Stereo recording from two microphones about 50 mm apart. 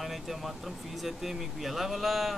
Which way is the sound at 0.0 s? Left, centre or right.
Centre.